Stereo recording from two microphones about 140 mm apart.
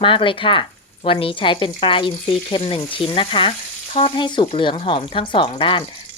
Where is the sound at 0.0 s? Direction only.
40° left (ahead or behind).